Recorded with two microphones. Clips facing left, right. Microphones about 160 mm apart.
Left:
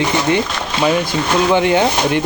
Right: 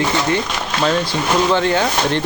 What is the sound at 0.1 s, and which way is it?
Speech, 20° left (ahead or behind).